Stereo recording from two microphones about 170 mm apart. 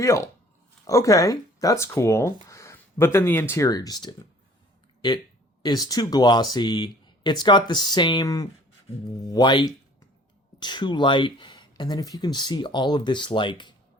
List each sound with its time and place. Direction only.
0.0 s speech: 20° left (ahead or behind)
5.6 s speech: 20° left (ahead or behind)